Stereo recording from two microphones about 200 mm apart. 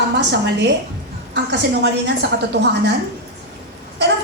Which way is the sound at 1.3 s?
60° right (ahead or behind).